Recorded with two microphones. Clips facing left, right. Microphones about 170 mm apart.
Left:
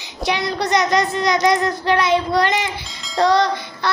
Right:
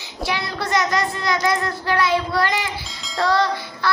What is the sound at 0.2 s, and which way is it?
Child singing, 20° left (ahead or behind).